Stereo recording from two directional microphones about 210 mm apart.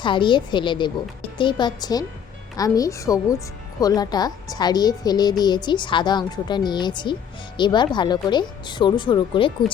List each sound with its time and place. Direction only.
0.0 s speech: 20° left (ahead or behind)